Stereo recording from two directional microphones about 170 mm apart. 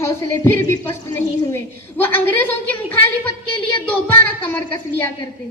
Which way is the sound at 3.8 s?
10° left (ahead or behind).